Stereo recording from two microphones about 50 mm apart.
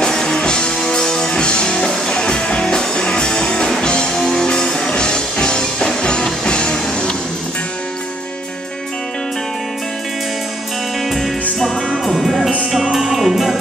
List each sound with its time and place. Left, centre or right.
0.0 s music: centre
11.6 s music: centre